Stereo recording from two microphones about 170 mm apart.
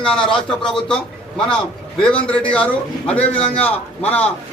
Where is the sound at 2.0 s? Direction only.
5° left (ahead or behind).